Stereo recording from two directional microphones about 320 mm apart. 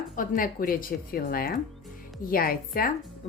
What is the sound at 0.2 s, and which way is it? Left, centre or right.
A woman's voice, left.